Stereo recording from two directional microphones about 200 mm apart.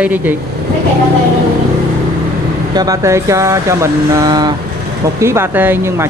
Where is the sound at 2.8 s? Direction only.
15° right (ahead or behind).